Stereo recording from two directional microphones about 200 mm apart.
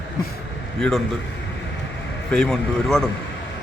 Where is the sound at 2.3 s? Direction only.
5° left (ahead or behind).